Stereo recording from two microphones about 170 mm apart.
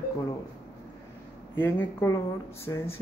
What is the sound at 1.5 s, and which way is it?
Speech, 10° left (ahead or behind).